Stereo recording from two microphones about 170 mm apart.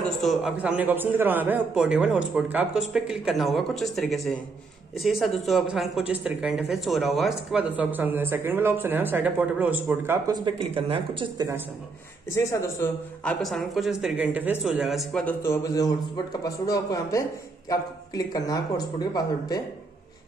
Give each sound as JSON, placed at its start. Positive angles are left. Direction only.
{"t": 0.2, "sound": "a man's voice", "side_deg": 0}
{"t": 12.4, "sound": "a man's voice", "side_deg": 15}
{"t": 15.4, "sound": "speech", "side_deg": 20}